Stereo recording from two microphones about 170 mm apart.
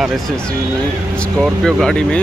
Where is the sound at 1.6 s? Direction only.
5° left (ahead or behind).